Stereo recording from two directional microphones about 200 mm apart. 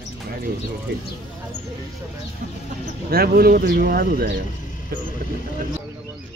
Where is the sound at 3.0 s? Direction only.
50° right (ahead or behind).